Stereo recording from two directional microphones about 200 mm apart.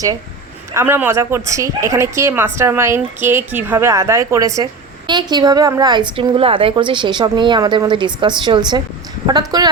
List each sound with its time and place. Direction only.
0.7 s a woman's voice: 10° right (ahead or behind)